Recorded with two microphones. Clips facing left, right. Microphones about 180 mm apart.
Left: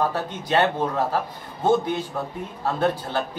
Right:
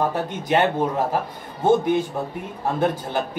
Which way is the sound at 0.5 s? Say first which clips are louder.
Right 1 dB; 15° right (ahead or behind).